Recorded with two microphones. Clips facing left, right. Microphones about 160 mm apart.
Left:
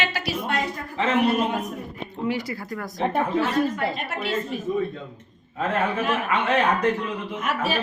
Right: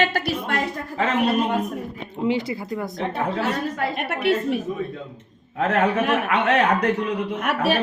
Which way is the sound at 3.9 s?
60° right (ahead or behind).